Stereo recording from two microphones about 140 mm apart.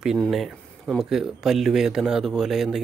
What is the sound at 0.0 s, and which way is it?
Speech, centre (ahead or behind).